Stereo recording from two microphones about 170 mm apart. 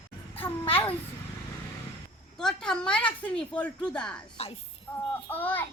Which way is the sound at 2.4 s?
5° left (ahead or behind).